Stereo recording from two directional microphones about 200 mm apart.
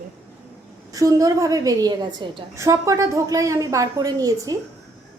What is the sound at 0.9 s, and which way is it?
A woman's voice, 15° right (ahead or behind).